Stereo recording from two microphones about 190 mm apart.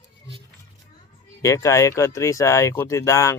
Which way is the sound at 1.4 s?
15° left (ahead or behind).